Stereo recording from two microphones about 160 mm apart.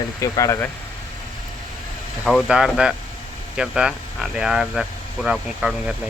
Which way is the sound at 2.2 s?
Centre (ahead or behind).